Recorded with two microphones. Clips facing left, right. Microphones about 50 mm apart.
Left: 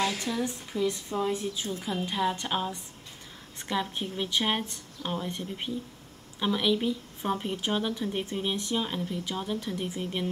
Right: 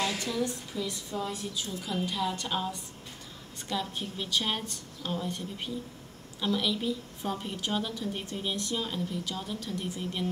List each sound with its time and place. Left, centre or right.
0.2 s a woman's voice: left
3.8 s a woman's voice: left